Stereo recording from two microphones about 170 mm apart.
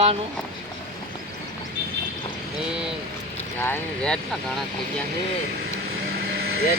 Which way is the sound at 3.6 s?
10° left (ahead or behind).